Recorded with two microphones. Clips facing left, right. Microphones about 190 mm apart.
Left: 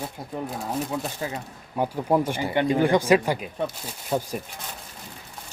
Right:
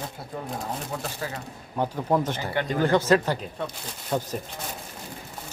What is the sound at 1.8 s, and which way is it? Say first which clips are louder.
Speech: left 2 dB; 10° left (ahead or behind).